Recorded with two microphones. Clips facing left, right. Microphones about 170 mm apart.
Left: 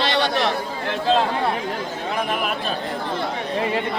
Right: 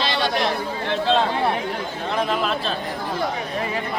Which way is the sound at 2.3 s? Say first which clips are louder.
Right 1 dB; 15° left (ahead or behind).